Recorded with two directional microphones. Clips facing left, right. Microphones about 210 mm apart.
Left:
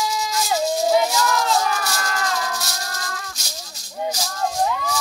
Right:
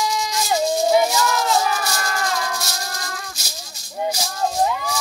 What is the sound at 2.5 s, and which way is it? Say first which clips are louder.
Music: right 1 dB; centre (ahead or behind).